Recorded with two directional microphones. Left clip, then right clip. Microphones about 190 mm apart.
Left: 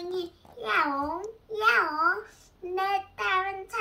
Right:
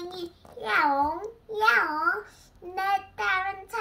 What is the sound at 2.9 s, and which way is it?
Child singing, 15° left (ahead or behind).